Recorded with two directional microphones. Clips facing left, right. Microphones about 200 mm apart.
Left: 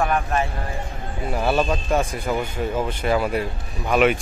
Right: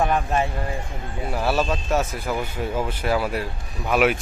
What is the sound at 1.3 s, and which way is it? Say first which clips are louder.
Speech: left 2 dB; 5° right (ahead or behind).